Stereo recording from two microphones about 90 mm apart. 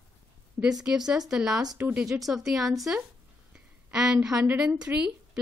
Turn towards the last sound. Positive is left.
turn(degrees=-10)  # may be behind; listen again after turning